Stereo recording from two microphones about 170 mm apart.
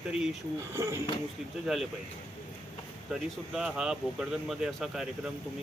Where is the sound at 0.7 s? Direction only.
15° right (ahead or behind).